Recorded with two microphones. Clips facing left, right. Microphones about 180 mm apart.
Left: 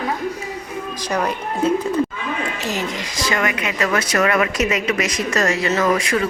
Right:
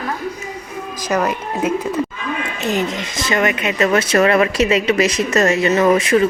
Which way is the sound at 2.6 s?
20° right (ahead or behind).